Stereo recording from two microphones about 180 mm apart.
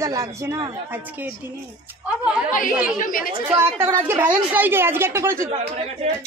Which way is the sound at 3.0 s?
50° left (ahead or behind).